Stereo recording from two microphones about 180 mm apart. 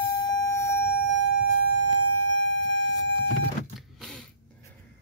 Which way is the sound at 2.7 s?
90° left.